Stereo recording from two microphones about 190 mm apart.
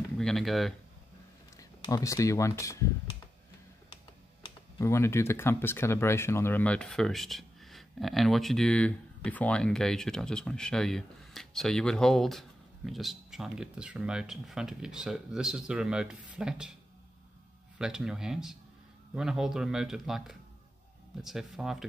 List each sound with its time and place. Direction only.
0.2 s speech: centre (ahead or behind)
1.6 s speech: 15° left (ahead or behind)
4.7 s speech: 15° left (ahead or behind); by 16.7 s 5° right (ahead or behind)
17.7 s speech: 5° right (ahead or behind)